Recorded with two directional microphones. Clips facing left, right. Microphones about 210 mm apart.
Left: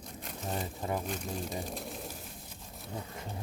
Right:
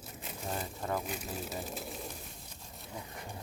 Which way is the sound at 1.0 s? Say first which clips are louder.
Left 3 dB; 5° right (ahead or behind).